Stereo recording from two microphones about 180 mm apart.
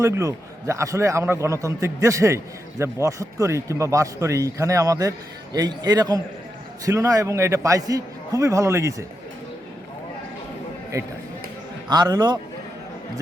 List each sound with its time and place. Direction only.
0.0 s a man's voice: 15° right (ahead or behind)
11.9 s a man's voice: 25° right (ahead or behind)